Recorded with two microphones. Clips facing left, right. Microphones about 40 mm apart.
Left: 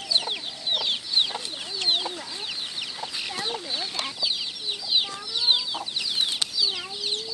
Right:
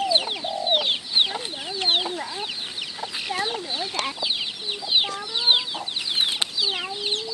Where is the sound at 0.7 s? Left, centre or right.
Right.